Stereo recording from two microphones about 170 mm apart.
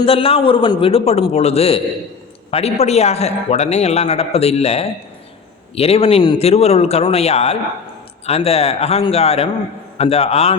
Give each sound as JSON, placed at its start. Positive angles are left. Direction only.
{"t": 0.0, "sound": "a man's voice", "side_deg": 35}